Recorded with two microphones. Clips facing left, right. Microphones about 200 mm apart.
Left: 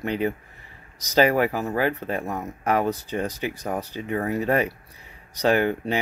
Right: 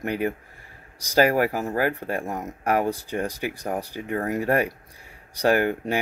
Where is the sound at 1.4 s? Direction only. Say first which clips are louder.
Even; 40° right (ahead or behind).